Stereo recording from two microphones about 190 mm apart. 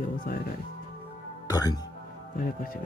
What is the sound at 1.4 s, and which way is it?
Speech, 20° left (ahead or behind).